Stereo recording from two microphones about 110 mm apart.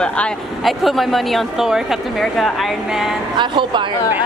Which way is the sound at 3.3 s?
45° right (ahead or behind).